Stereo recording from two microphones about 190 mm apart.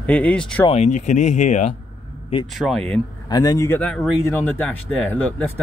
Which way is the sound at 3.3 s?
20° left (ahead or behind).